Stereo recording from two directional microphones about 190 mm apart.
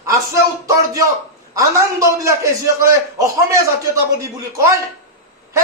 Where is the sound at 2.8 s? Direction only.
15° right (ahead or behind).